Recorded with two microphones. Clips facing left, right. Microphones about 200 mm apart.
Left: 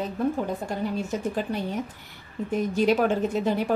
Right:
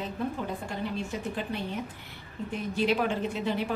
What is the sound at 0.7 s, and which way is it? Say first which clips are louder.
A woman's voice: left 5 dB; 40° left (ahead or behind).